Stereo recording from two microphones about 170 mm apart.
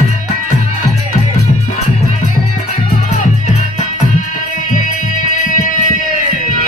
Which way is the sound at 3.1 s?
50° left (ahead or behind).